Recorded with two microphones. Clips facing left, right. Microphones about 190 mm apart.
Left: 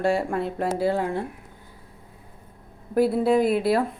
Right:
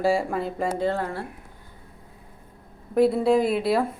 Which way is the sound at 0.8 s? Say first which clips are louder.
Left 2 dB; 10° left (ahead or behind).